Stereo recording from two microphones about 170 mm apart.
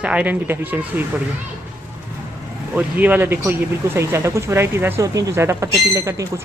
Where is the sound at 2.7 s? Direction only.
10° right (ahead or behind).